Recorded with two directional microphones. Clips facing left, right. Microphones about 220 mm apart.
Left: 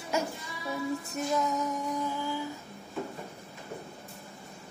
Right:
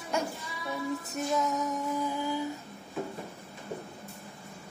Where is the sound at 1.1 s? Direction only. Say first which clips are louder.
Even; centre (ahead or behind).